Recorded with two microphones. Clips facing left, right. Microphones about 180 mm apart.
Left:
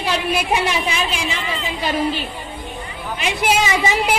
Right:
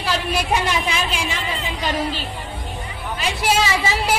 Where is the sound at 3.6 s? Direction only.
20° left (ahead or behind).